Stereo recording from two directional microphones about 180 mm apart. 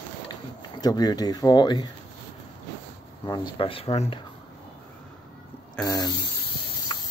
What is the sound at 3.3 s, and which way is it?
Speech, 25° left (ahead or behind).